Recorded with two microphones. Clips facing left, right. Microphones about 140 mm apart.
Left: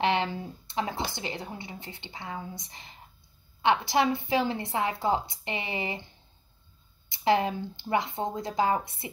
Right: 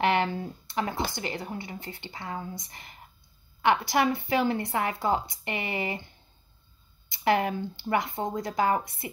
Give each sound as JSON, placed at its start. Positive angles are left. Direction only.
{"t": 0.0, "sound": "speech", "side_deg": 25}
{"t": 7.1, "sound": "speech", "side_deg": 25}